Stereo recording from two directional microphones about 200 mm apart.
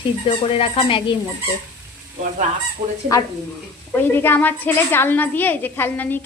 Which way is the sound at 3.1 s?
15° left (ahead or behind).